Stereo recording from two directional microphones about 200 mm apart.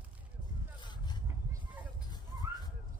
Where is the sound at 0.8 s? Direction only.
20° left (ahead or behind).